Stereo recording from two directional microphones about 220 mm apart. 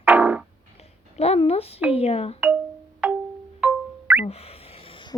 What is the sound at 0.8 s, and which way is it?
A child's voice, 30° left (ahead or behind).